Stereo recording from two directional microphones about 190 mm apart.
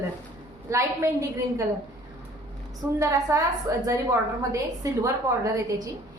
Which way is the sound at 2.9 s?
15° right (ahead or behind).